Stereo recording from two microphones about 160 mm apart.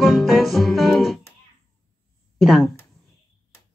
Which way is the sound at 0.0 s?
Centre (ahead or behind).